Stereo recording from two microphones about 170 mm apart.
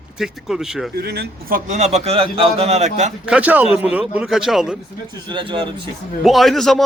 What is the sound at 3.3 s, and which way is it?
Speech, 10° right (ahead or behind).